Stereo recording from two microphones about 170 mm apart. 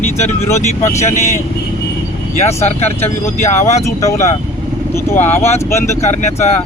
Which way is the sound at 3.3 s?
45° left (ahead or behind).